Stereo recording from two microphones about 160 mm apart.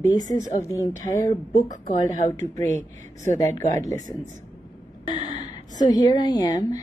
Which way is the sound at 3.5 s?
45° right (ahead or behind).